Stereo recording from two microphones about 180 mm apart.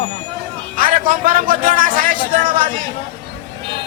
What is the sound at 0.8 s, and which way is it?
A man's voice, 50° right (ahead or behind).